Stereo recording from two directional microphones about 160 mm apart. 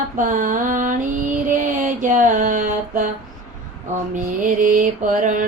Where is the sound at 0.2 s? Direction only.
55° right (ahead or behind).